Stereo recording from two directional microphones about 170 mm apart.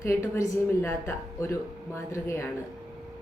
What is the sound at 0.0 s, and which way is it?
Speech, 15° left (ahead or behind).